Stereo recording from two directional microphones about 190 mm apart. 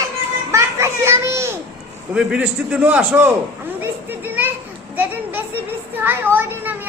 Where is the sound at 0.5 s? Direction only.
15° right (ahead or behind).